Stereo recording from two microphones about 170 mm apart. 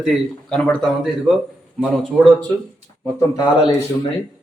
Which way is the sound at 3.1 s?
25° left (ahead or behind).